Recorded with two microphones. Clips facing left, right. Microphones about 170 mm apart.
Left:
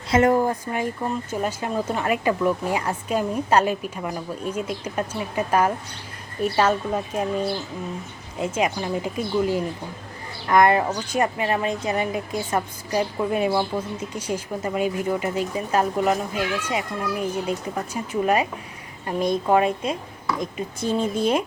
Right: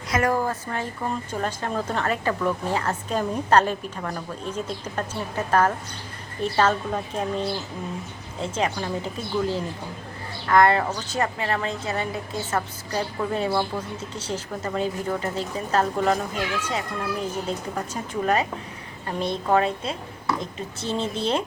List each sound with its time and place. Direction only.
0.1 s a woman's voice: 25° left (ahead or behind)